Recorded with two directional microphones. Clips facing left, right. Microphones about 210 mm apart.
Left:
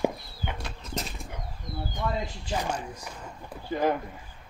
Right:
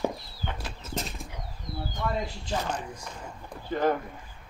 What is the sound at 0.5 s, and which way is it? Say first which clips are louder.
Bird flight: even; centre (ahead or behind).